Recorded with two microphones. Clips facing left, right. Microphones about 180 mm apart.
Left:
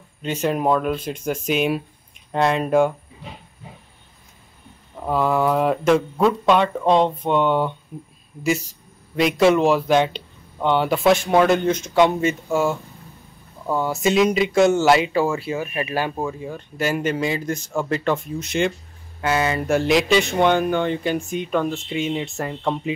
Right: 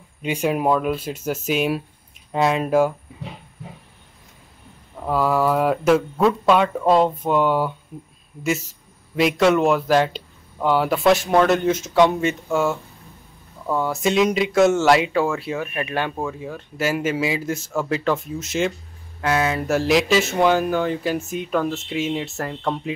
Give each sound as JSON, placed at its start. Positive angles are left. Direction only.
{"t": 0.2, "sound": "speech", "side_deg": -10}
{"t": 5.0, "sound": "speech", "side_deg": 0}
{"t": 9.1, "sound": "speech", "side_deg": 0}
{"t": 13.7, "sound": "speech", "side_deg": 0}